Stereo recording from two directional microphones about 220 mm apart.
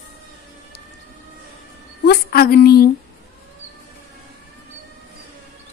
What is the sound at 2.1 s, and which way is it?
Speech, 45° left (ahead or behind).